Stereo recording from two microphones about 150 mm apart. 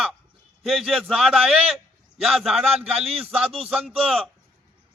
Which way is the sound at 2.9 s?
40° right (ahead or behind).